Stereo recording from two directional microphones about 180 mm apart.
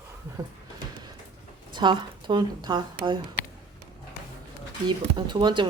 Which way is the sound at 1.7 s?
25° right (ahead or behind).